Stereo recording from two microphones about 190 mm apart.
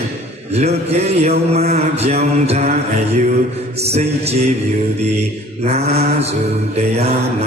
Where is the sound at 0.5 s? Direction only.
35° right (ahead or behind).